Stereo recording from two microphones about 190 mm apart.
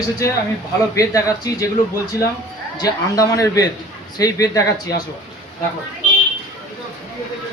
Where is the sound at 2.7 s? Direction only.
20° left (ahead or behind).